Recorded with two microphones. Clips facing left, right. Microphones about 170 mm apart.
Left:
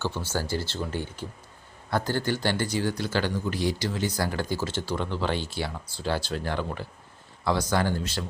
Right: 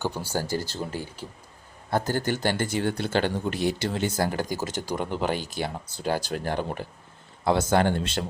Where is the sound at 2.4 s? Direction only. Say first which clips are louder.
Right 1 dB; 50° right (ahead or behind).